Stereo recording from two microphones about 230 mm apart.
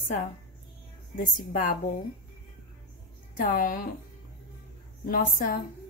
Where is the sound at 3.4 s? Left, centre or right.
Left.